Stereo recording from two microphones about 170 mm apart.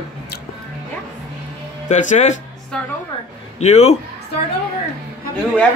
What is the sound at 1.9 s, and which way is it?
Speech, 45° left (ahead or behind).